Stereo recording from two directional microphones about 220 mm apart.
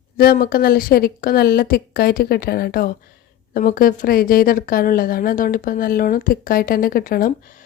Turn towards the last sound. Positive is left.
turn(degrees=40)  # may be behind; listen again after turning